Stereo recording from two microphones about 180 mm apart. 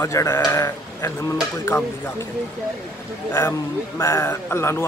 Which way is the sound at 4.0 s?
15° left (ahead or behind).